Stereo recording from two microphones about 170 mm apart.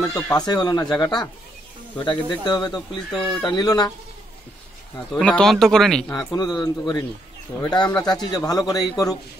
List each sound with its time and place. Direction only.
0.0 s a man's voice: 15° left (ahead or behind)
3.1 s speech: centre (ahead or behind)
3.4 s a man's voice: 25° left (ahead or behind)
5.1 s speech: 10° left (ahead or behind)
6.1 s a man's voice: 25° left (ahead or behind)